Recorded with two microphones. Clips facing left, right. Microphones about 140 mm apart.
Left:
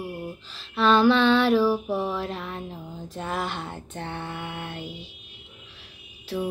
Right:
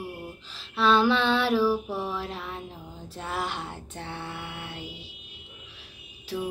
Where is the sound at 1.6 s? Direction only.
15° left (ahead or behind).